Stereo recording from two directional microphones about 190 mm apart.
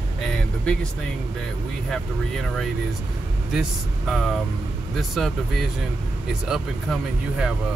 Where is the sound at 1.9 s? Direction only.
Centre (ahead or behind).